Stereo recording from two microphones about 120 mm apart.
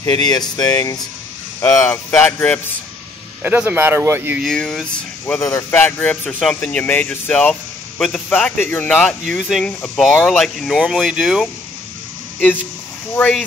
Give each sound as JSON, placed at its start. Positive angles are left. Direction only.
{"t": 0.0, "sound": "speech", "side_deg": 30}
{"t": 1.6, "sound": "speech", "side_deg": 20}
{"t": 2.2, "sound": "speech", "side_deg": 10}
{"t": 3.4, "sound": "speech", "side_deg": -15}
{"t": 4.4, "sound": "speech", "side_deg": 5}
{"t": 5.4, "sound": "speech", "side_deg": 25}
{"t": 5.7, "sound": "speech", "side_deg": 15}